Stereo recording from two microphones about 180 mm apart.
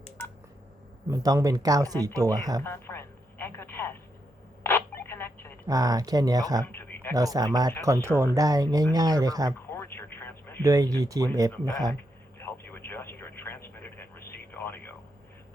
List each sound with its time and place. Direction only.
1.1 s speech: 20° right (ahead or behind)
2.6 s telephone: 15° left (ahead or behind)
4.6 s a sound: 10° left (ahead or behind)
5.6 s speech: 20° right (ahead or behind)
6.7 s a sound: 10° left (ahead or behind)
7.1 s speech: 20° right (ahead or behind)
9.7 s telephone: 15° left (ahead or behind)
10.6 s speech: 20° right (ahead or behind)
12.4 s radio: 10° left (ahead or behind)